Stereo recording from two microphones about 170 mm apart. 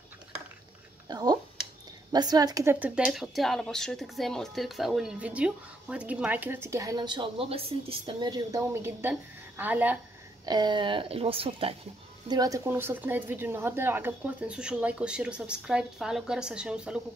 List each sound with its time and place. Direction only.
1.0 s a sound: 20° right (ahead or behind)
2.1 s speech: 25° right (ahead or behind)
10.4 s speech: 25° right (ahead or behind)
12.3 s speech: 20° right (ahead or behind); by 17.0 s 5° right (ahead or behind)